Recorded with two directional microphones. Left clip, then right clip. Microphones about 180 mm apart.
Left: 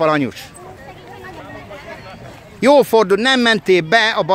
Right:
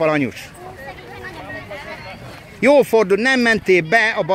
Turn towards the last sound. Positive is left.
turn(degrees=15)  # may be behind; listen again after turning